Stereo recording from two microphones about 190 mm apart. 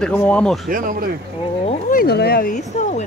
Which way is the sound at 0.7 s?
45° right (ahead or behind).